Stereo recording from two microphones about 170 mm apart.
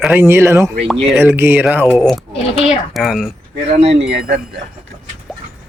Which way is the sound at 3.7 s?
40° right (ahead or behind).